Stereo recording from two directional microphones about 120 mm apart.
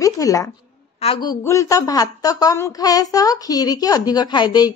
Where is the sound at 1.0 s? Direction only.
60° left (ahead or behind).